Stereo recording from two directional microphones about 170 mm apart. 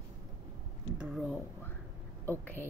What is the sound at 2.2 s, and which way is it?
Speech, 10° left (ahead or behind).